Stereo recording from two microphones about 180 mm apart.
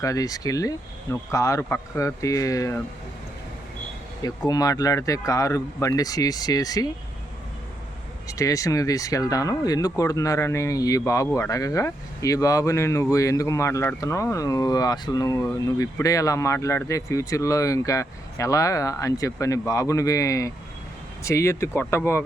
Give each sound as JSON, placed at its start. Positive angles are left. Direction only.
{"t": 0.0, "sound": "a man's voice", "side_deg": 20}
{"t": 4.2, "sound": "a man's voice", "side_deg": 20}
{"t": 8.3, "sound": "a man's voice", "side_deg": 20}